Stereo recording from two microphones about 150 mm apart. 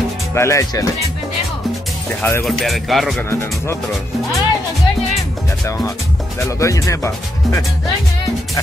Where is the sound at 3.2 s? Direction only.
15° left (ahead or behind).